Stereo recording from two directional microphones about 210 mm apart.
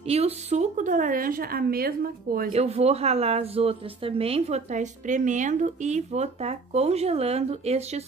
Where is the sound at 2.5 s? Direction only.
30° right (ahead or behind).